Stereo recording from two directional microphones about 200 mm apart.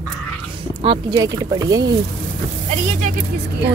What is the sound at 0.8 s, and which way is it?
Speech, 25° right (ahead or behind).